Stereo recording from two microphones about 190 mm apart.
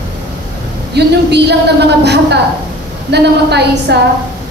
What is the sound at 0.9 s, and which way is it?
Speech, 60° right (ahead or behind).